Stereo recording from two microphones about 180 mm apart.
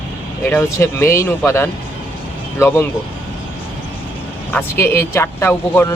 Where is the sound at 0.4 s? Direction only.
15° left (ahead or behind).